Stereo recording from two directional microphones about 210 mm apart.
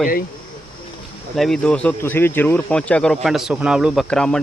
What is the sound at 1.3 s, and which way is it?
Speech, centre (ahead or behind).